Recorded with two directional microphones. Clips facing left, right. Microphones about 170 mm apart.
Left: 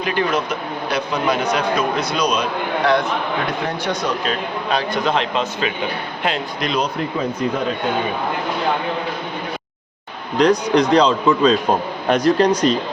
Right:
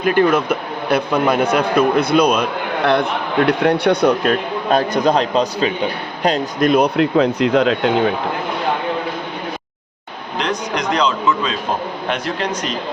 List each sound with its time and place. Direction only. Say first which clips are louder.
0.0 s a man's voice: right 6 dB; 50° right (ahead or behind); by 7.8 s 90° right
10.3 s a man's voice: left 7 dB; 35° left (ahead or behind)